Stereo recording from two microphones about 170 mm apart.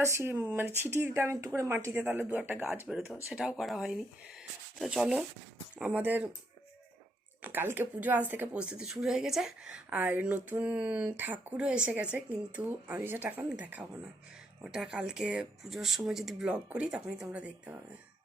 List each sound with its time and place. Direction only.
0.0 s speech: 15° right (ahead or behind)
7.4 s speech: 10° right (ahead or behind)